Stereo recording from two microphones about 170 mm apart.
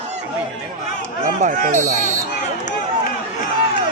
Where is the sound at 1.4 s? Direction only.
50° right (ahead or behind).